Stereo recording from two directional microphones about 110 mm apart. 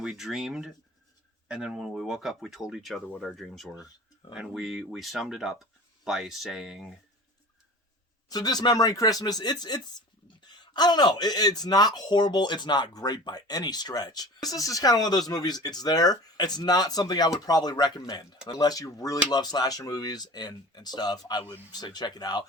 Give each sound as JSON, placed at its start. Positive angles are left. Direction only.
{"t": 0.0, "sound": "speech", "side_deg": -5}
{"t": 8.3, "sound": "speech", "side_deg": 35}